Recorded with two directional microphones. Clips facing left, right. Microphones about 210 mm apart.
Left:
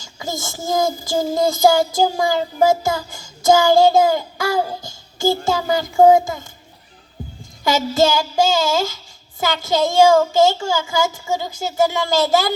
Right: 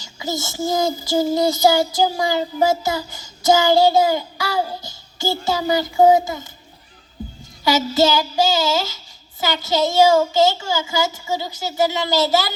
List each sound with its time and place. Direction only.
0.0 s child singing: 50° left (ahead or behind)
7.9 s child singing: 50° left (ahead or behind)